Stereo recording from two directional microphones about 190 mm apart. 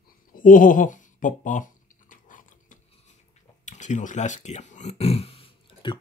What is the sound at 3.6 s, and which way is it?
Speech, 40° left (ahead or behind).